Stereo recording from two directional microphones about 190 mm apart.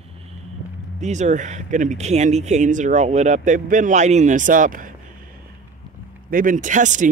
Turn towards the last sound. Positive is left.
turn(degrees=-40)  # may be behind; listen again after turning